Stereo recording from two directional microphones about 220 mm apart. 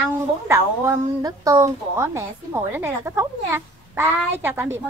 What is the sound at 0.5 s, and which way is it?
A woman's voice, 15° right (ahead or behind).